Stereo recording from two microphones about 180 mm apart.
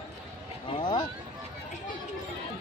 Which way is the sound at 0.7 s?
25° left (ahead or behind).